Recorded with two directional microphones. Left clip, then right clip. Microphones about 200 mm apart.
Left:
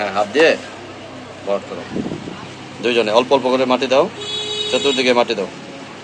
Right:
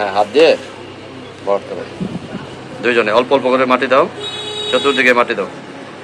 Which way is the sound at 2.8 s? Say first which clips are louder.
Right 3 dB; 15° left (ahead or behind).